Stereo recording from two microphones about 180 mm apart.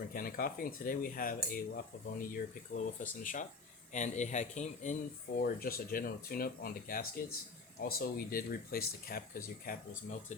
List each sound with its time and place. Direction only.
0.1 s speech: 55° left (ahead or behind)
5.4 s speech: 55° left (ahead or behind)